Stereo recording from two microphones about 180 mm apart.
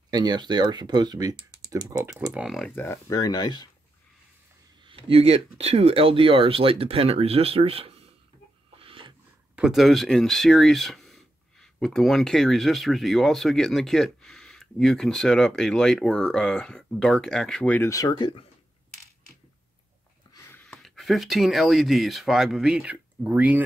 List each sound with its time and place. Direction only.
0.1 s speech: 25° right (ahead or behind)
2.3 s speech: centre (ahead or behind)
2.7 s speech: 15° left (ahead or behind)
4.8 s speech: 30° right (ahead or behind)
8.7 s wood: 30° right (ahead or behind)
9.6 s speech: centre (ahead or behind); by 18.4 s 25° left (ahead or behind)
20.4 s speech: 5° left (ahead or behind); by 23.6 s 10° right (ahead or behind)